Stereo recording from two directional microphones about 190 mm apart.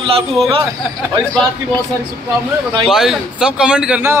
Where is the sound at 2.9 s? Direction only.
Centre (ahead or behind).